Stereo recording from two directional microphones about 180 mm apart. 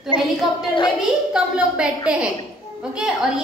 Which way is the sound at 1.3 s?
5° right (ahead or behind).